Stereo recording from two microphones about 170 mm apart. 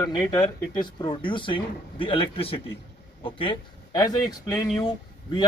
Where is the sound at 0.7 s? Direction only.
30° left (ahead or behind).